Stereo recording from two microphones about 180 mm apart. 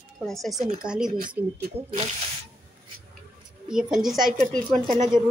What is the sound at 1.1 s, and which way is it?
Speech, 45° right (ahead or behind).